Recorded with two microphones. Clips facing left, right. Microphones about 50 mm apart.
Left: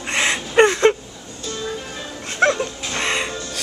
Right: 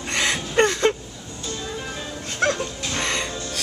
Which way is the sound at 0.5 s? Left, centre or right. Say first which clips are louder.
Left 6 dB; left.